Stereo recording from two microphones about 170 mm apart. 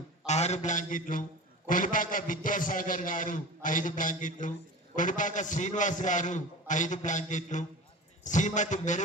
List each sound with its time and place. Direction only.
0.3 s a man's voice: 40° left (ahead or behind)